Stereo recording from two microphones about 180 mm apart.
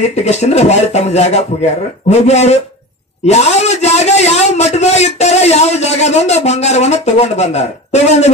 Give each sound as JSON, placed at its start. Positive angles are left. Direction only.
{"t": 0.0, "sound": "a man's voice", "side_deg": 40}